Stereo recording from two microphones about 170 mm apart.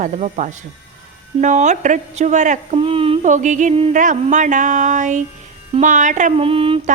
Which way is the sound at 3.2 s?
45° right (ahead or behind).